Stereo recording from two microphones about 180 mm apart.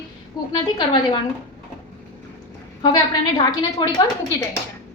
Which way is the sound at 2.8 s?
25° left (ahead or behind).